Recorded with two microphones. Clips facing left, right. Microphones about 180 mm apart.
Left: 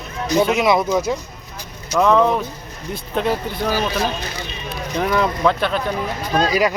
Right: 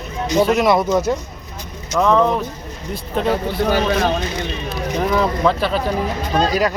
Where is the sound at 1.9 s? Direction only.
Centre (ahead or behind).